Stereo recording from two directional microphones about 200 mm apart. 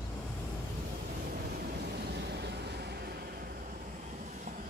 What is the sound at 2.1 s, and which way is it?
Vehicle, 55° right (ahead or behind).